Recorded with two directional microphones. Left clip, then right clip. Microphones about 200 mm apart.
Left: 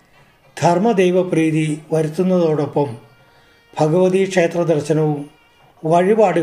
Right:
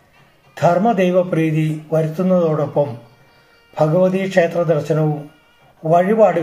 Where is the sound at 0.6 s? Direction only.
40° left (ahead or behind).